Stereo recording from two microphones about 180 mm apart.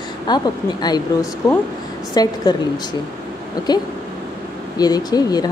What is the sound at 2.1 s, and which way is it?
Speech, 20° left (ahead or behind).